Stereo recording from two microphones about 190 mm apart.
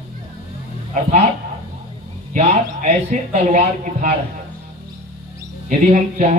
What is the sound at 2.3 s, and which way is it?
A man's voice, 40° right (ahead or behind).